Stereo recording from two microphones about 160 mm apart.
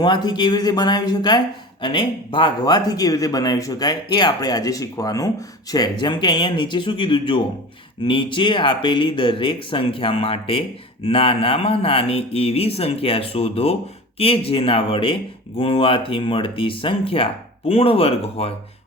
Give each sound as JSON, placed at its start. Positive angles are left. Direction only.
{"t": 0.0, "sound": "speech", "side_deg": 30}